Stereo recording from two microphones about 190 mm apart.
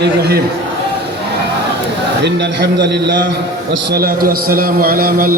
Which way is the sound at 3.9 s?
50° right (ahead or behind).